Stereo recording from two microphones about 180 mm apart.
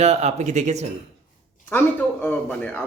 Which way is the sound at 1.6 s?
10° left (ahead or behind).